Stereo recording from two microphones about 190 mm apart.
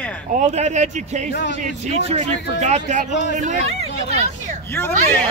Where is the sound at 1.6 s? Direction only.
35° right (ahead or behind).